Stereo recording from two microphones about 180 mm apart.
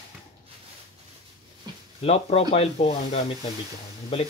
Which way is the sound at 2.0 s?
35° left (ahead or behind).